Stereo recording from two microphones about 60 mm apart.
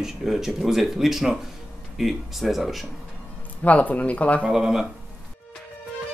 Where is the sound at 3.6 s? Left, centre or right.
Left.